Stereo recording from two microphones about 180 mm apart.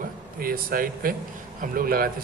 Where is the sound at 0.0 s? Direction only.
50° right (ahead or behind).